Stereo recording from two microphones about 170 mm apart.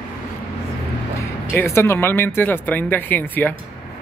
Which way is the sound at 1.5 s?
15° left (ahead or behind).